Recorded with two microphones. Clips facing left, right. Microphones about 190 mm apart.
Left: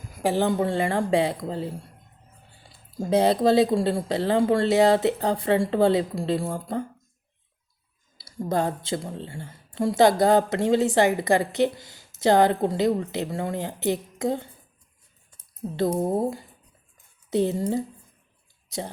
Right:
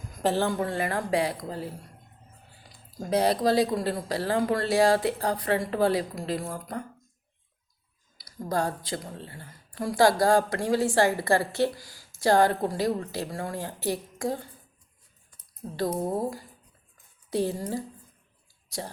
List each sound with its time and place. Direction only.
0.1 s speech: 10° left (ahead or behind); by 6.8 s 25° left (ahead or behind)
8.2 s speech: 25° left (ahead or behind)
15.6 s speech: 25° left (ahead or behind)